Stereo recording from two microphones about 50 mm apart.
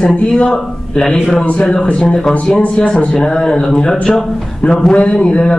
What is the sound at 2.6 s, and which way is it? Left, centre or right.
Speech, left.